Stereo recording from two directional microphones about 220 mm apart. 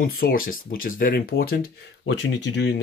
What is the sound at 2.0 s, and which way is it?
Speech, 55° left (ahead or behind).